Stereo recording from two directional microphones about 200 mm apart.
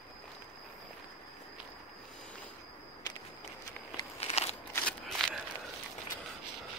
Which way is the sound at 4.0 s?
30° left (ahead or behind).